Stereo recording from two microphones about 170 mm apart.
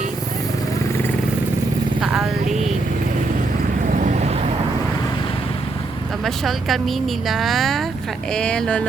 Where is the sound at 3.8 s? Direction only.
50° right (ahead or behind).